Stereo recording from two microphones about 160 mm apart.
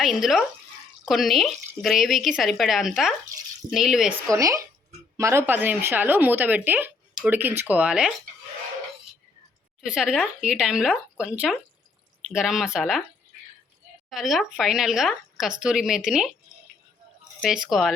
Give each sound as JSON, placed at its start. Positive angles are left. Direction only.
{"t": 0.0, "sound": "speech", "side_deg": 0}
{"t": 4.3, "sound": "speech", "side_deg": -20}
{"t": 9.8, "sound": "speech", "side_deg": -5}
{"t": 14.1, "sound": "speech", "side_deg": 0}
{"t": 17.4, "sound": "speech", "side_deg": -5}